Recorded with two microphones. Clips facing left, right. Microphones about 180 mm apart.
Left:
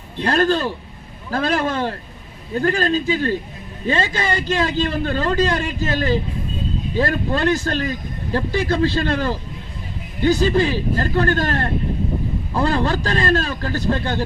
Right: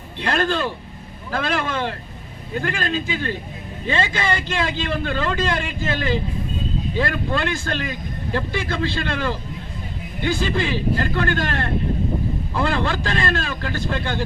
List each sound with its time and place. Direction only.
0.2 s a man's voice: 40° left (ahead or behind)